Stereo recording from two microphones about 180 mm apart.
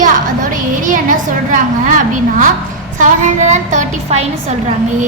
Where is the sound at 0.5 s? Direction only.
45° right (ahead or behind).